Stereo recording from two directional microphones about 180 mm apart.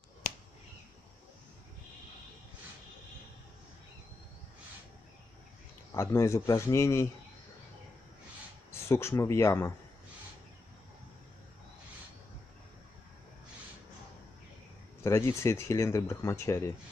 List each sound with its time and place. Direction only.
0.2 s finger snapping: 45° left (ahead or behind)
5.9 s speech: 15° left (ahead or behind)
8.7 s speech: 15° left (ahead or behind)
15.0 s speech: 15° left (ahead or behind)